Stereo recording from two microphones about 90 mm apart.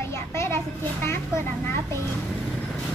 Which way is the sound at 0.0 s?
30° left (ahead or behind).